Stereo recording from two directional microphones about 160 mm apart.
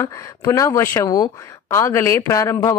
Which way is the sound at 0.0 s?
20° left (ahead or behind).